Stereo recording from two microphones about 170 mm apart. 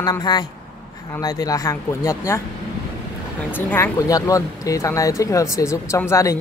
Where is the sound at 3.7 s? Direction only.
20° left (ahead or behind).